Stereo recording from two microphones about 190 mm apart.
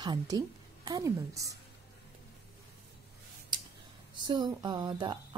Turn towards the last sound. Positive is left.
turn(degrees=-25)  # may be behind; listen again after turning